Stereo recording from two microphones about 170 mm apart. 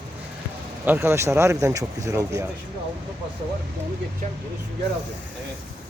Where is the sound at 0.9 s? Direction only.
15° right (ahead or behind).